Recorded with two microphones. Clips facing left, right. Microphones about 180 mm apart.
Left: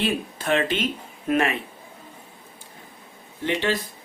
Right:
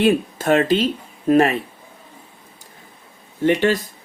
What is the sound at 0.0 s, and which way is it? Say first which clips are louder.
Speech: right 9 dB; 45° right (ahead or behind).